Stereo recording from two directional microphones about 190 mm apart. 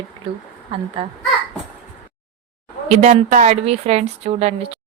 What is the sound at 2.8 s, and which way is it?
A woman's voice, 40° right (ahead or behind).